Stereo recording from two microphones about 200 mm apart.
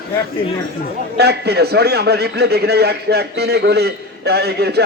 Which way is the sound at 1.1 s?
55° right (ahead or behind).